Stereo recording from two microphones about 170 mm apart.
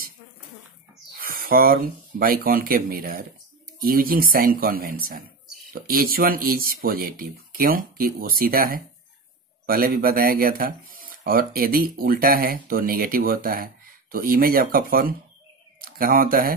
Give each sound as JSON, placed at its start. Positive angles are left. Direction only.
{"t": 1.1, "sound": "speech", "side_deg": -60}